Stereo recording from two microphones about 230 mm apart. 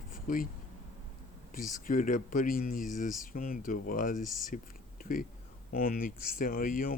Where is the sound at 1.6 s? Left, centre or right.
Left.